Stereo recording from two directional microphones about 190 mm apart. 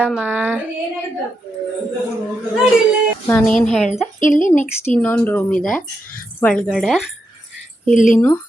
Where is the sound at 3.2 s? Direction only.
10° left (ahead or behind).